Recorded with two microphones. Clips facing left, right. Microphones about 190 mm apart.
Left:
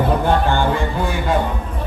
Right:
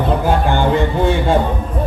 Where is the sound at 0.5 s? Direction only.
20° right (ahead or behind).